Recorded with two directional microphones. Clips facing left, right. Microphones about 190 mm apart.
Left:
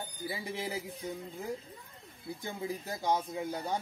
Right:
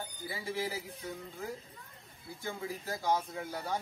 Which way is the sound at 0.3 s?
20° left (ahead or behind).